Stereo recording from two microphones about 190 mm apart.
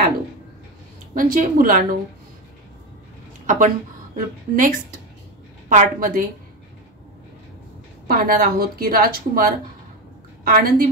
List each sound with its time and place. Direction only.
1.1 s a woman's voice: 45° right (ahead or behind)
3.4 s a woman's voice: 40° right (ahead or behind)
5.7 s a woman's voice: 45° right (ahead or behind)
8.1 s a woman's voice: 50° right (ahead or behind)